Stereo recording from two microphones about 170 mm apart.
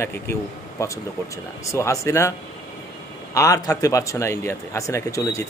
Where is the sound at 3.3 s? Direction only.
20° left (ahead or behind).